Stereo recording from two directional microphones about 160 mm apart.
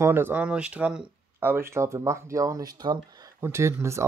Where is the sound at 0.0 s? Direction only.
15° right (ahead or behind).